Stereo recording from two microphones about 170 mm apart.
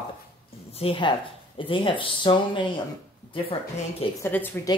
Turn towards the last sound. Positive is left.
turn(degrees=15)  # may be behind; listen again after turning